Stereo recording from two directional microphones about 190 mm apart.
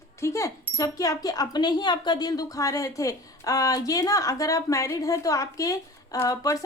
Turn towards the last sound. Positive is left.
turn(degrees=15)  # may be behind; listen again after turning